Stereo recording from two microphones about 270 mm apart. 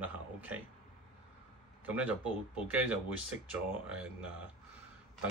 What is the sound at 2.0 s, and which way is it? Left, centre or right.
Speech, centre.